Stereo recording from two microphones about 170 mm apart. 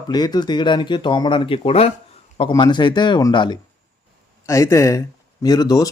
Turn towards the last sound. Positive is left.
turn(degrees=20)  # may be behind; listen again after turning